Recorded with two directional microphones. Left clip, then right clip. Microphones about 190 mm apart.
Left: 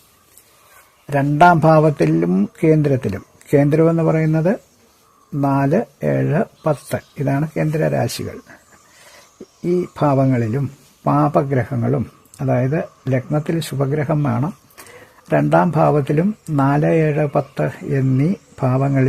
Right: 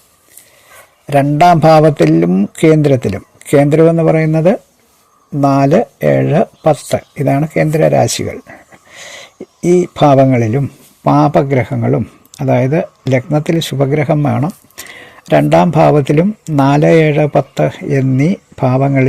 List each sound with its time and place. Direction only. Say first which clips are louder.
1.0 s speech: right 4 dB; 10° right (ahead or behind)
9.6 s speech: right 9 dB; 15° right (ahead or behind)